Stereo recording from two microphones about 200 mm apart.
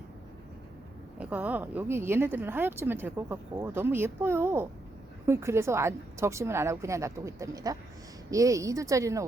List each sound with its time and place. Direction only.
1.2 s speech: 5° right (ahead or behind)